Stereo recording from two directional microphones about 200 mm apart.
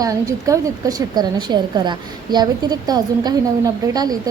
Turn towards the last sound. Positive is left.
turn(degrees=-20)  # may be behind; listen again after turning